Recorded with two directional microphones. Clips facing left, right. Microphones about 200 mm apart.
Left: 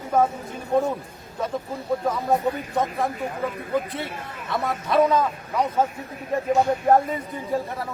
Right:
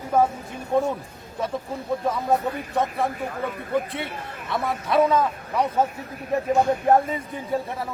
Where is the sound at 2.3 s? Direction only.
Centre (ahead or behind).